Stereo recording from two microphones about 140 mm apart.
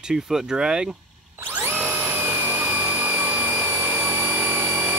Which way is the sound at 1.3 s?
15° right (ahead or behind).